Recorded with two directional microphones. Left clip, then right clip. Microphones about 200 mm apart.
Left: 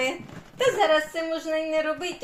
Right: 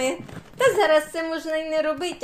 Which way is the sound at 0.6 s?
45° right (ahead or behind).